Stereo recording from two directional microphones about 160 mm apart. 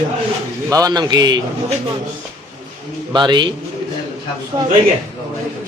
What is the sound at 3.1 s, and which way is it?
Speech, 30° right (ahead or behind).